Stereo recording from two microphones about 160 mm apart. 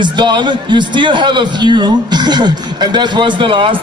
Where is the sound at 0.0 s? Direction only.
30° right (ahead or behind).